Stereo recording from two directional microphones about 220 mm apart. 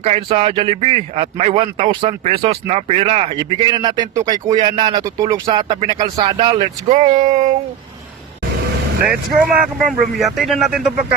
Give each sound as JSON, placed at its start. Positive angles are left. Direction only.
{"t": 0.0, "sound": "speech", "side_deg": -25}
{"t": 9.0, "sound": "speech", "side_deg": -5}